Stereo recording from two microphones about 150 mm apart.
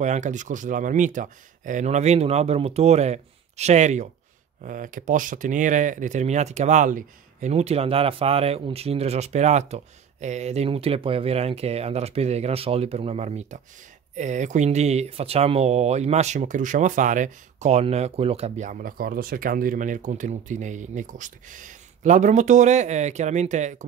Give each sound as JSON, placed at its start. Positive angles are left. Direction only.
{"t": 0.0, "sound": "speech", "side_deg": -50}
{"t": 4.6, "sound": "speech", "side_deg": -60}